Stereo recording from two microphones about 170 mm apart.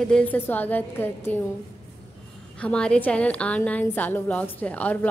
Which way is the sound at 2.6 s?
5° left (ahead or behind).